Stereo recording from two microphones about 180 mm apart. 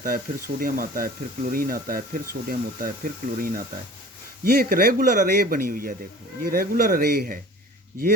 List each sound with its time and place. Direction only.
0.0 s speech: 50° right (ahead or behind)